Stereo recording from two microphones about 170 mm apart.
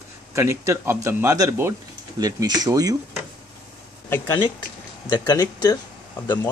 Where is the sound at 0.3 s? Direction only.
15° right (ahead or behind).